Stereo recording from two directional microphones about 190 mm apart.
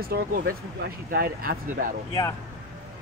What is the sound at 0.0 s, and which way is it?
Speech, 50° right (ahead or behind).